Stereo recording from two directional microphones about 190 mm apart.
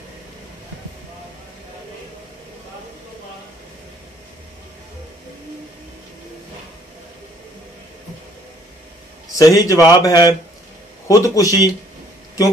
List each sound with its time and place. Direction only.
9.4 s speech: 20° left (ahead or behind)